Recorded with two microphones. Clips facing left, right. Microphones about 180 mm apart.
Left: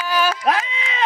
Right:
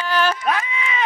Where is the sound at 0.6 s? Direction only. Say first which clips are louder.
Right 1 dB; 90° left.